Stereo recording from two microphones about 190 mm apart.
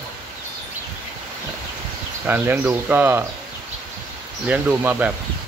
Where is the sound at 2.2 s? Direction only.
10° right (ahead or behind).